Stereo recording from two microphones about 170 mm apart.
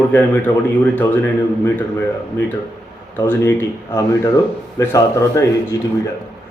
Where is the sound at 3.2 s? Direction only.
10° left (ahead or behind).